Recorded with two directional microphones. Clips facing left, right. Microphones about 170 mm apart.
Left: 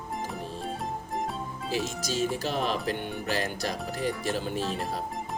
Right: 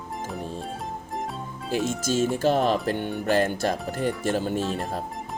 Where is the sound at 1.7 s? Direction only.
50° right (ahead or behind).